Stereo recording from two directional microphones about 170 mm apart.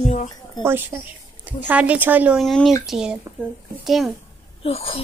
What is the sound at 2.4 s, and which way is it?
Speech, centre (ahead or behind).